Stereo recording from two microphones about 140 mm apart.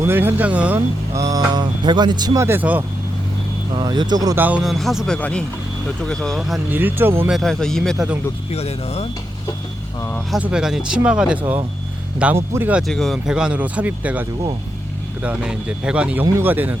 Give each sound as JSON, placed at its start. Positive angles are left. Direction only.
{"t": 0.0, "sound": "speech", "side_deg": -15}
{"t": 1.1, "sound": "speech", "side_deg": -25}
{"t": 3.8, "sound": "speech", "side_deg": -30}
{"t": 4.4, "sound": "speech", "side_deg": -10}
{"t": 4.6, "sound": "speech", "side_deg": 0}
{"t": 6.7, "sound": "speech", "side_deg": -15}
{"t": 7.3, "sound": "speech", "side_deg": 0}
{"t": 8.5, "sound": "speech", "side_deg": 45}
{"t": 10.3, "sound": "speech", "side_deg": -5}
{"t": 12.9, "sound": "speech", "side_deg": 0}